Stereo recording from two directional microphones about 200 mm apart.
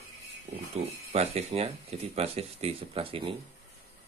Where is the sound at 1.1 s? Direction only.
30° right (ahead or behind).